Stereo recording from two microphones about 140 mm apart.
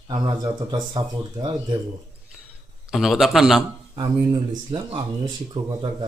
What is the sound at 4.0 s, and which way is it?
Speech, 30° right (ahead or behind).